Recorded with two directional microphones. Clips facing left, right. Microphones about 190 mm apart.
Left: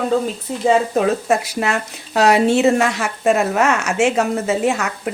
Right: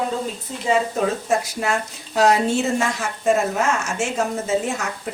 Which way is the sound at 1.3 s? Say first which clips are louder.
Left 3 dB; 70° left (ahead or behind).